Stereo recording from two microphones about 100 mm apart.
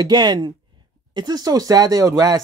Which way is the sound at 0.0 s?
45° right (ahead or behind).